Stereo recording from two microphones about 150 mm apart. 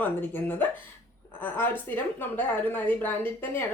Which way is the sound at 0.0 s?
10° left (ahead or behind).